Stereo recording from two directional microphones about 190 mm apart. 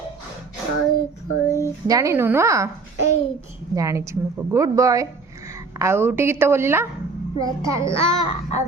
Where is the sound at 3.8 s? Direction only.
15° right (ahead or behind).